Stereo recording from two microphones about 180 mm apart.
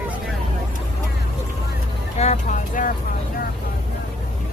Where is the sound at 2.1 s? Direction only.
40° left (ahead or behind).